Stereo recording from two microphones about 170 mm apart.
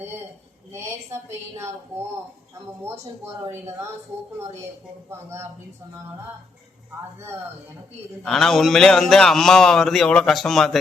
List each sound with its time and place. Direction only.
0.7 s a woman's voice: 15° right (ahead or behind)
3.5 s a woman's voice: 15° right (ahead or behind)
5.0 s a woman's voice: 15° right (ahead or behind)
8.2 s a man's voice: centre (ahead or behind)